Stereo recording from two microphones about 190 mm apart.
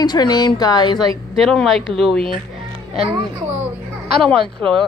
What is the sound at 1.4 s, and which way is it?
Speech, centre (ahead or behind).